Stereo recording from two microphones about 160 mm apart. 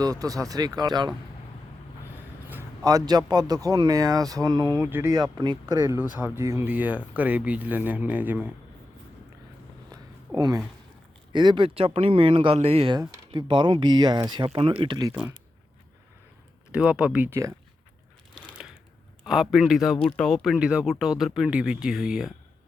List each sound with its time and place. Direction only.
0.0 s speech: 20° right (ahead or behind)
2.5 s speech: 20° right (ahead or behind)
5.1 s speech: 25° right (ahead or behind)
6.1 s speech: 15° right (ahead or behind)
9.9 s a sound: 20° right (ahead or behind)
11.3 s speech: 30° right (ahead or behind)
16.7 s speech: 5° right (ahead or behind)
19.2 s a man's voice: centre (ahead or behind)